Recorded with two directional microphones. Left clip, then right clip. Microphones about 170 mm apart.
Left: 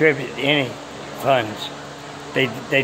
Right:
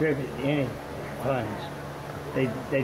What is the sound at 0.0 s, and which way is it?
Speech, 55° left (ahead or behind).